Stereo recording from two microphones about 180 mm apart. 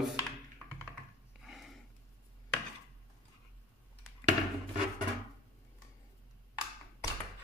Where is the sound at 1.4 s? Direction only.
Centre (ahead or behind).